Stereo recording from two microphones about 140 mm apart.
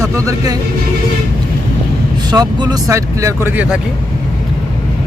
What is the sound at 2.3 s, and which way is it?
Speech, 30° right (ahead or behind).